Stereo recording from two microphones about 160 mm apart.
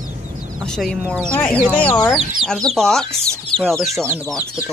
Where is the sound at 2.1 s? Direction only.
Centre (ahead or behind).